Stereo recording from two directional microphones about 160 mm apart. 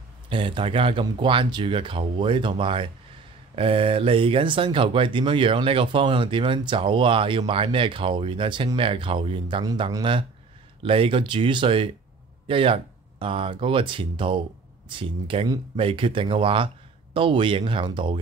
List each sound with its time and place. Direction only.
0.3 s speech: 35° right (ahead or behind)